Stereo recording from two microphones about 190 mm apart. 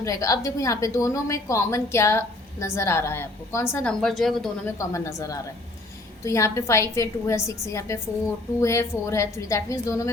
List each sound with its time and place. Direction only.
0.0 s a woman's voice: 15° left (ahead or behind)
4.0 s speech: centre (ahead or behind)
4.6 s a woman's voice: 15° left (ahead or behind)